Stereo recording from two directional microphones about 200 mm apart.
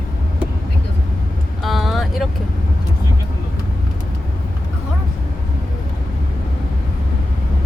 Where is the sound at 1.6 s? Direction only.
Centre (ahead or behind).